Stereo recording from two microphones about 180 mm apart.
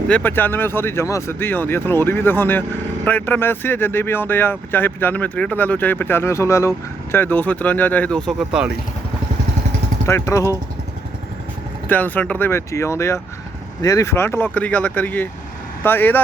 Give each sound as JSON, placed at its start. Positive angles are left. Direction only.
{"t": 0.1, "sound": "speech", "side_deg": 10}
{"t": 10.1, "sound": "speech", "side_deg": 15}
{"t": 11.9, "sound": "speech", "side_deg": 10}